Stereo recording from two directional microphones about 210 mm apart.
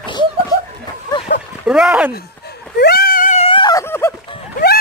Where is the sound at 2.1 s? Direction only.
50° left (ahead or behind).